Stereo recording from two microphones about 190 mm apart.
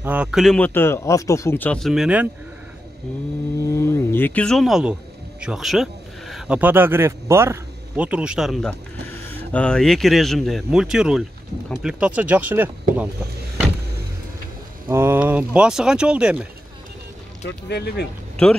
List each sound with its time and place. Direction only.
0.0 s speech: 5° right (ahead or behind)
3.7 s speech: 15° left (ahead or behind); by 13.1 s 10° right (ahead or behind)
14.9 s speech: 15° right (ahead or behind)
17.6 s speech: 60° left (ahead or behind)
18.3 s a sound: 5° left (ahead or behind)